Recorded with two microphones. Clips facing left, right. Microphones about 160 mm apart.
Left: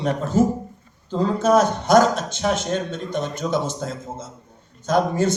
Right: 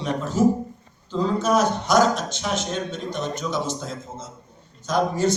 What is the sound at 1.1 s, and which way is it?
A man's voice, 50° left (ahead or behind).